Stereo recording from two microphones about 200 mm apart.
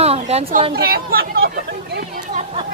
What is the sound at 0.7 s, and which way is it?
Speech, 50° right (ahead or behind).